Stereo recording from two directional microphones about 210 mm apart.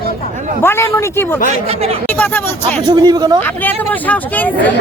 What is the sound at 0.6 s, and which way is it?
Speech, 10° left (ahead or behind).